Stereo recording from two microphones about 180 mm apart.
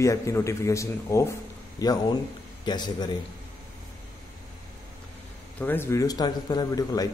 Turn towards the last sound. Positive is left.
turn(degrees=20)  # may be behind; listen again after turning